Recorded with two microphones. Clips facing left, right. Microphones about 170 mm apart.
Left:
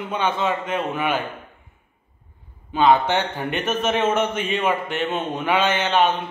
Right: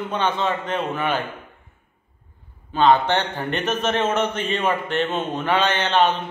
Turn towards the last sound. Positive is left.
turn(degrees=10)  # may be behind; listen again after turning